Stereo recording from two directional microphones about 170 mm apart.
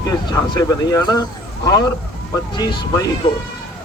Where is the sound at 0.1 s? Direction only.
20° left (ahead or behind).